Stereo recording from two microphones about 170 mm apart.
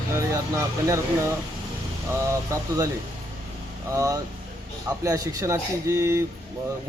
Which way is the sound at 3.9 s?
20° right (ahead or behind).